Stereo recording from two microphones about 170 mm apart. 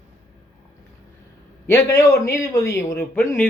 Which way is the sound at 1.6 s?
15° left (ahead or behind).